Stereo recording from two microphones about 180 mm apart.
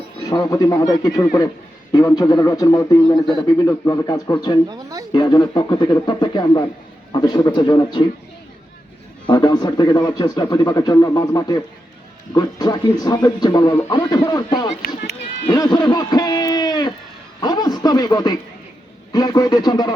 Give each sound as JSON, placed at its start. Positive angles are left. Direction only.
{"t": 0.3, "sound": "a man's voice", "side_deg": 20}
{"t": 4.7, "sound": "speech", "side_deg": -20}
{"t": 5.1, "sound": "a man's voice", "side_deg": 25}
{"t": 9.2, "sound": "a man's voice", "side_deg": 25}